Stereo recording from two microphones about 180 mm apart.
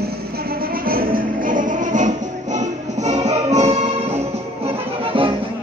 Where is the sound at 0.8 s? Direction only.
55° right (ahead or behind); by 3.7 s 40° right (ahead or behind).